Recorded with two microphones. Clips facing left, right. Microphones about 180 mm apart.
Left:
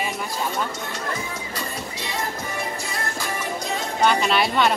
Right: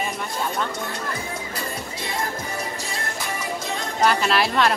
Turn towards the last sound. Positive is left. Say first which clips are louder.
# even
turn(degrees=0)  # may be behind; listen again after turning